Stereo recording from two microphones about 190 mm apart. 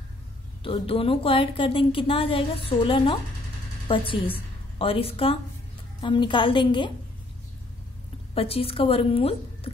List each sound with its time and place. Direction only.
0.7 s a woman's voice: 30° left (ahead or behind)
8.4 s a woman's voice: 30° left (ahead or behind)